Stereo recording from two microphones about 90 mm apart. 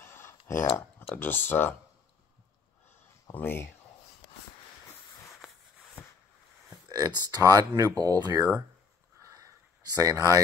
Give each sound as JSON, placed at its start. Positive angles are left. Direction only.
{"t": 0.0, "sound": "tick-tock", "side_deg": 25}
{"t": 1.1, "sound": "speech", "side_deg": 20}
{"t": 3.3, "sound": "speech", "side_deg": 25}
{"t": 6.9, "sound": "speech", "side_deg": -45}
{"t": 9.2, "sound": "a sound", "side_deg": -40}